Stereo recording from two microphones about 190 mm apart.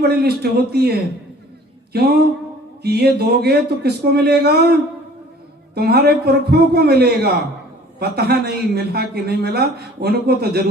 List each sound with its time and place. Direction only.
0.0 s a man's voice: 60° right (ahead or behind)
1.9 s a sound: 55° right (ahead or behind)
2.8 s a man's voice: 55° right (ahead or behind)